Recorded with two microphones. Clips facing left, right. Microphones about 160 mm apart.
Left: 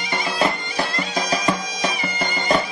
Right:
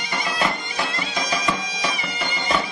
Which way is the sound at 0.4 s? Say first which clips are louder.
Left 4 dB; 40° left (ahead or behind).